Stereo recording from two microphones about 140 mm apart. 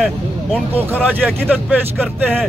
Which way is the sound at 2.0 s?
15° right (ahead or behind).